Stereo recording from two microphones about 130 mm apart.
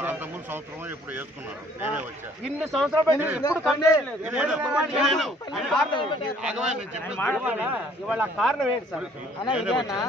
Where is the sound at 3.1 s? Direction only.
15° right (ahead or behind).